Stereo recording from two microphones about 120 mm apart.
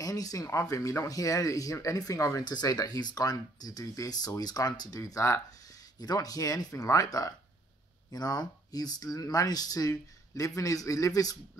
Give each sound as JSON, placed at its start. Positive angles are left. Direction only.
{"t": 0.0, "sound": "speech", "side_deg": 30}